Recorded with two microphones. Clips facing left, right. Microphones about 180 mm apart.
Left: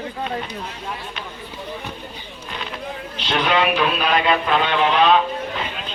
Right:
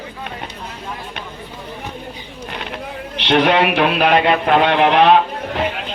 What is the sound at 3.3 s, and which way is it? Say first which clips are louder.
Speech: right 5 dB; 60° right (ahead or behind).